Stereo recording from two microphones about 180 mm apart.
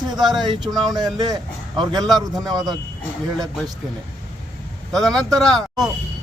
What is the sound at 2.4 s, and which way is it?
Speech, centre (ahead or behind).